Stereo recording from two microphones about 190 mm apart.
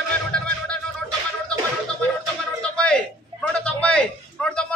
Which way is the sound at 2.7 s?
5° left (ahead or behind).